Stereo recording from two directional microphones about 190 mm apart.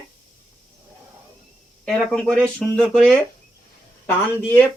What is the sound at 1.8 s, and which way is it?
Speech, centre (ahead or behind).